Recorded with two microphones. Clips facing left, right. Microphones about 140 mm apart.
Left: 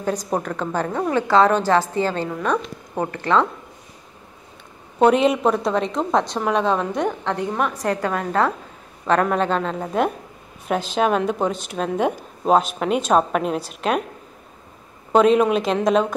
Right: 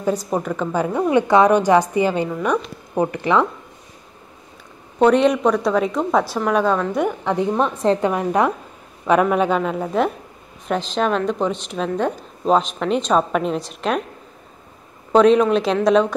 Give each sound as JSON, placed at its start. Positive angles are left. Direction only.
{"t": 0.3, "sound": "speech", "side_deg": -5}
{"t": 4.9, "sound": "a woman's voice", "side_deg": 5}
{"t": 7.3, "sound": "a woman's voice", "side_deg": -25}
{"t": 15.1, "sound": "a woman's voice", "side_deg": 5}